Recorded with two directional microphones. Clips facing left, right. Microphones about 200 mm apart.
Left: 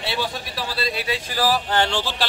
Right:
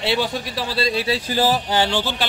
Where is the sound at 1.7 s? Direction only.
5° right (ahead or behind).